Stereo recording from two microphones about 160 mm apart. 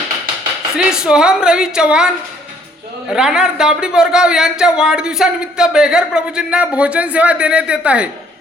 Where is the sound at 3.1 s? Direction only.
5° right (ahead or behind).